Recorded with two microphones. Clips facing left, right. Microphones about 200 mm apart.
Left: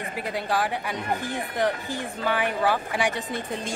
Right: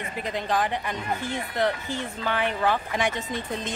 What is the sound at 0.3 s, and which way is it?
Speech, 10° left (ahead or behind).